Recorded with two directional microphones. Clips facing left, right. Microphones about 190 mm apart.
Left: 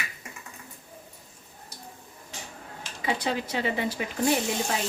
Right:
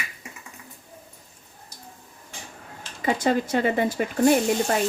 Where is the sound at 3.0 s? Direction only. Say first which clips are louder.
Right 6 dB; 50° right (ahead or behind).